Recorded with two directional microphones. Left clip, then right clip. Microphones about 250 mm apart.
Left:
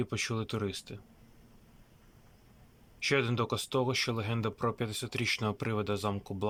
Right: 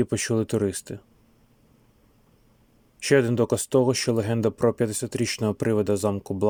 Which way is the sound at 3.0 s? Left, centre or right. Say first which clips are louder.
Right 9 dB; right.